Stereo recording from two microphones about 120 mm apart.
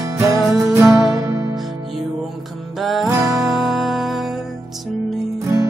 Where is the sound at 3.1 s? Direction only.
25° right (ahead or behind).